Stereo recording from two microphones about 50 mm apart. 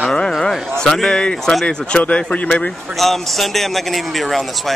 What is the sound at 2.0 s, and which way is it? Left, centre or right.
Speech, left.